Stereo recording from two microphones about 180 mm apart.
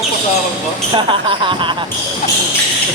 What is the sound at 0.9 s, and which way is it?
Speech, 25° right (ahead or behind).